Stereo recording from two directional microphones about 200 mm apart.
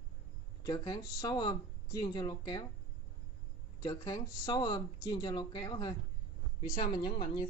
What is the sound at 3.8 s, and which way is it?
Speech, 20° left (ahead or behind).